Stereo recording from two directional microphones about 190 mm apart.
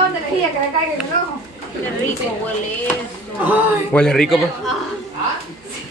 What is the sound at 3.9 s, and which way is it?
Speech, 5° left (ahead or behind).